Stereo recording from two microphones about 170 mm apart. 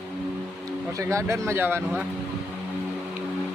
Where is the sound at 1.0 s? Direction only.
15° right (ahead or behind).